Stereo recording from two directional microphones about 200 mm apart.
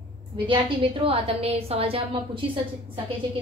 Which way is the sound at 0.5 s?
25° right (ahead or behind).